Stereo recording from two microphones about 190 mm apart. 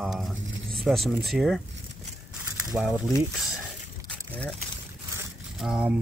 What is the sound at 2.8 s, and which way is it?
Speech, centre (ahead or behind).